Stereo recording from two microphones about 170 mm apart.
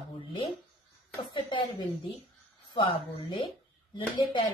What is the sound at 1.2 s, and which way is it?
Speech, 25° left (ahead or behind).